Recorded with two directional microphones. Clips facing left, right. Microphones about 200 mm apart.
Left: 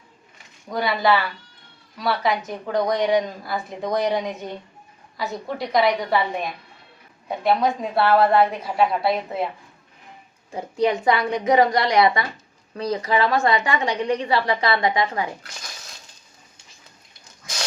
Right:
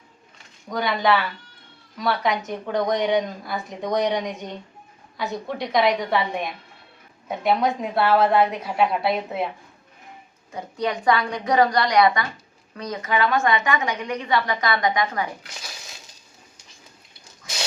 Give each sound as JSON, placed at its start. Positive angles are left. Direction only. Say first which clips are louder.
{"t": 0.7, "sound": "speech", "louder": "left 1 dB", "side_deg": 5}
{"t": 10.5, "sound": "a woman's voice", "louder": "left 5 dB", "side_deg": 25}